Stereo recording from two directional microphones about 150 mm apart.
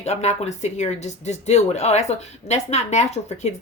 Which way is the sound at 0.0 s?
50° left (ahead or behind).